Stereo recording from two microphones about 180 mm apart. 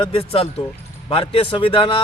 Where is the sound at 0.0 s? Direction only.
30° left (ahead or behind).